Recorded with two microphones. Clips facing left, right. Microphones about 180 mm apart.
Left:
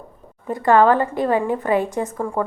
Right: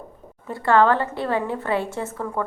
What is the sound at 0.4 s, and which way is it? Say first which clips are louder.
A woman's voice: left 3 dB; 15° left (ahead or behind).